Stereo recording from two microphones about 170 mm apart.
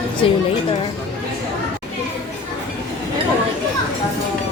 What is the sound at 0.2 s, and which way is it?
Music, 35° left (ahead or behind).